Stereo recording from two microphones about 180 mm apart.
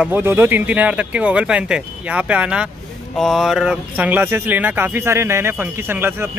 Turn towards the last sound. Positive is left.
turn(degrees=-10)  # may be behind; listen again after turning